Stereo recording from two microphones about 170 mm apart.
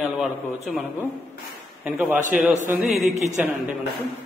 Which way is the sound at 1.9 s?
10° right (ahead or behind).